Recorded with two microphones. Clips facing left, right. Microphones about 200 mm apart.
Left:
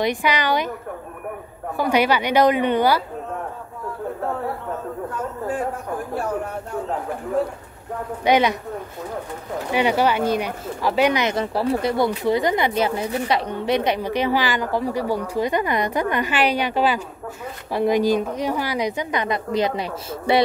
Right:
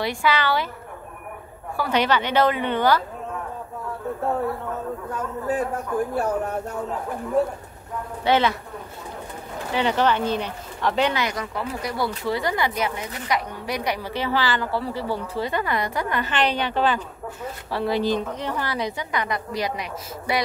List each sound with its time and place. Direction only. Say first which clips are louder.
0.0 s a woman's voice: left 2 dB; 20° left (ahead or behind)
1.8 s a woman's voice: left 3 dB; 10° left (ahead or behind)
5.9 s speech: right 4 dB; 40° left (ahead or behind)
8.2 s a woman's voice: left 2 dB; 15° left (ahead or behind)
9.7 s a woman's voice: left 2 dB; 10° left (ahead or behind); by 12.1 s 30° left (ahead or behind)
12.1 s a woman's voice: left 5 dB; 20° left (ahead or behind)